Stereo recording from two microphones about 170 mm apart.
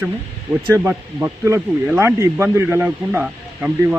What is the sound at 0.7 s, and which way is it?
A man's voice, 15° right (ahead or behind).